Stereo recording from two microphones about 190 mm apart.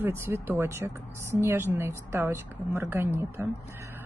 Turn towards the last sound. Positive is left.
turn(degrees=-15)  # may be behind; listen again after turning